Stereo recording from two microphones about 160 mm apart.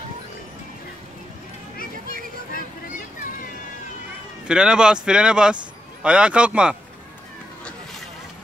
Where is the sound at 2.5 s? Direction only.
60° left (ahead or behind).